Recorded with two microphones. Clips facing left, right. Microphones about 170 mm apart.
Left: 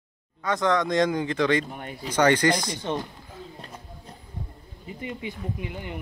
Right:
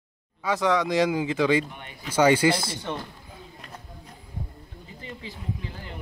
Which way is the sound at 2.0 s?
10° right (ahead or behind).